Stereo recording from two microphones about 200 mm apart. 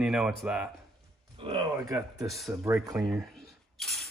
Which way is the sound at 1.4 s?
25° right (ahead or behind).